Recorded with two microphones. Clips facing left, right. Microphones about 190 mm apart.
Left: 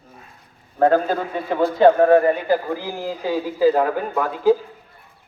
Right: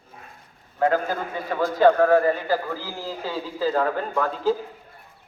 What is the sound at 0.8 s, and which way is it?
A man's voice, 30° left (ahead or behind).